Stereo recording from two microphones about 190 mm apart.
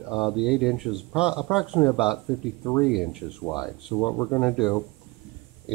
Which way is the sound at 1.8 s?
10° left (ahead or behind).